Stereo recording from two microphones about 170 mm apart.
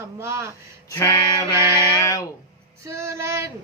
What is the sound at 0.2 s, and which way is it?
Speech, 15° right (ahead or behind).